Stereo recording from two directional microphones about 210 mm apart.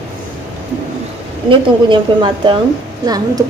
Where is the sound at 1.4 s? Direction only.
25° right (ahead or behind).